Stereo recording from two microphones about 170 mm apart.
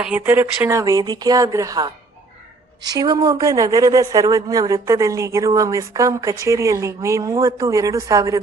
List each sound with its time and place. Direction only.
0.0 s speech: 10° right (ahead or behind)